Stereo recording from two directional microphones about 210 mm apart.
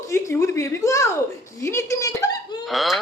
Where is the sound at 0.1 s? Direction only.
15° left (ahead or behind).